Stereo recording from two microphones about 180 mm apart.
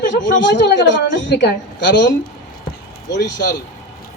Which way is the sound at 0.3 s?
80° left.